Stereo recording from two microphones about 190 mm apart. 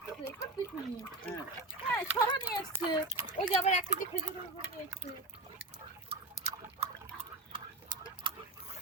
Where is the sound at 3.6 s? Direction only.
35° left (ahead or behind).